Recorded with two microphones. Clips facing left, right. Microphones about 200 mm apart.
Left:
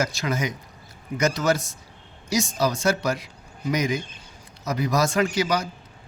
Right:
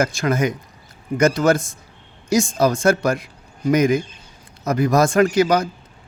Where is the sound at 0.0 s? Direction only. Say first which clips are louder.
Right 6 dB; 50° right (ahead or behind).